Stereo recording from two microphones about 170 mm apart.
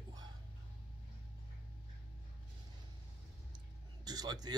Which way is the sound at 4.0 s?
25° right (ahead or behind).